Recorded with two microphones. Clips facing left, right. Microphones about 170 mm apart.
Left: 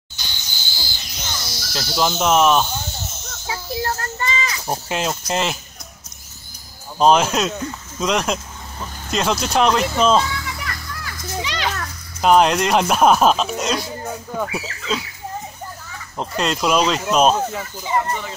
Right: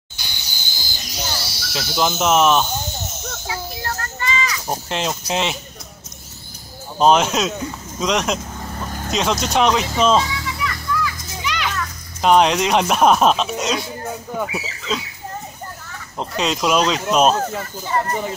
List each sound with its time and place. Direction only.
0.8 s a sound: 40° right (ahead or behind)
1.7 s speech: centre (ahead or behind)
3.4 s children playing: 30° left (ahead or behind)
4.6 s speech: 5° left (ahead or behind)
7.0 s speech: centre (ahead or behind)
8.7 s vehicle: 50° right (ahead or behind)
9.1 s speech: centre (ahead or behind)
10.3 s children playing: 55° left (ahead or behind)
11.4 s children playing: 35° left (ahead or behind)
12.2 s speech: centre (ahead or behind)
16.2 s speech: centre (ahead or behind)
17.4 s speech: 10° left (ahead or behind)